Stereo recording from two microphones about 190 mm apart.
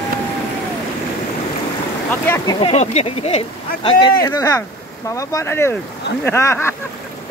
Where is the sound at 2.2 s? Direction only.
10° left (ahead or behind).